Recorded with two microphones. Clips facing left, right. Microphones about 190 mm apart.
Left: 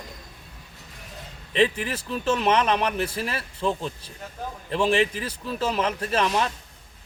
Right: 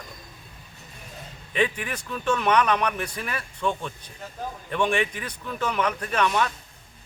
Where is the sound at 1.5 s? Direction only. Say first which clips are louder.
Left 3 dB; 30° left (ahead or behind).